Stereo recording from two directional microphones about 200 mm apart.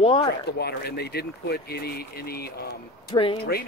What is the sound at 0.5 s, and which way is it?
Speech, 55° left (ahead or behind).